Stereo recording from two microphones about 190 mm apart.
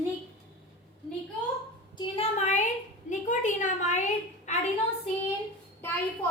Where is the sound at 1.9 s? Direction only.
25° left (ahead or behind).